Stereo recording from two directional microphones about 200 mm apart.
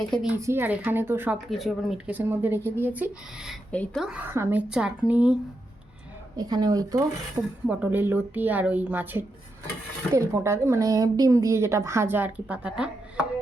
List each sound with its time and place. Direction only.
0.1 s speech: centre (ahead or behind)
6.3 s speech: 20° right (ahead or behind)